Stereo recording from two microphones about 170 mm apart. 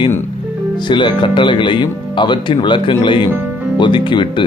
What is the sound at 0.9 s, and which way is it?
Speech, 30° left (ahead or behind).